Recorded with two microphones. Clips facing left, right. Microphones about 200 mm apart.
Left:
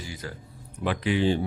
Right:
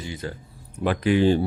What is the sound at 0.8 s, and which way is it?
Speech, 45° right (ahead or behind).